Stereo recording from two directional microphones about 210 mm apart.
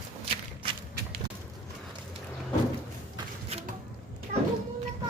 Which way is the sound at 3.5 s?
30° right (ahead or behind).